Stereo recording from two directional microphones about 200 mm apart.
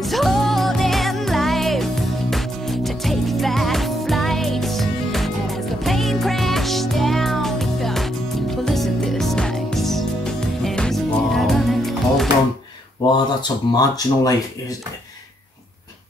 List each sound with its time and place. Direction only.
0.0 s music: centre (ahead or behind)
13.4 s speech: 20° left (ahead or behind)